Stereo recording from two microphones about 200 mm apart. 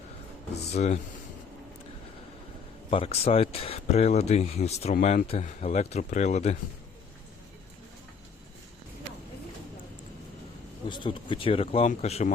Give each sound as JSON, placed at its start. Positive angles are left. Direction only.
{"t": 0.7, "sound": "speech", "side_deg": 40}
{"t": 2.9, "sound": "speech", "side_deg": 30}
{"t": 10.8, "sound": "speech", "side_deg": 25}